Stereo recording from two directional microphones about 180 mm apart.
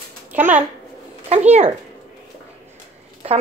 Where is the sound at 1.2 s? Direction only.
35° right (ahead or behind).